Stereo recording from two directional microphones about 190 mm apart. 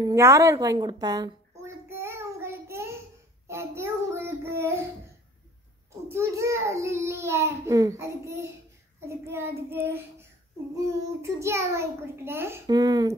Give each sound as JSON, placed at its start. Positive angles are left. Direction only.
{"t": 0.0, "sound": "a sound", "side_deg": -15}
{"t": 3.4, "sound": "child singing", "side_deg": -15}
{"t": 6.0, "sound": "a child's voice", "side_deg": -15}